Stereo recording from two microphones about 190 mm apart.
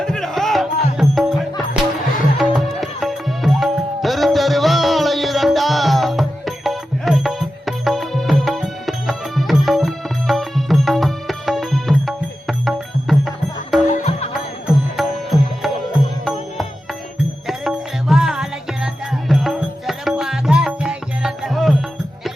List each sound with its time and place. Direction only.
0.0 s music: 5° left (ahead or behind)
13.9 s music: 35° left (ahead or behind)
14.7 s music: centre (ahead or behind)